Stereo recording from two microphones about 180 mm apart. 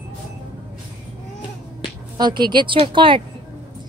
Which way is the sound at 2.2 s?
25° right (ahead or behind).